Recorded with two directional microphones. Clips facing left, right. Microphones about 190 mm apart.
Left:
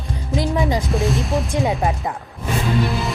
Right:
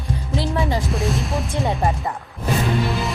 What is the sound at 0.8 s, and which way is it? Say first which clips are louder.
Speech: left 3 dB; centre (ahead or behind).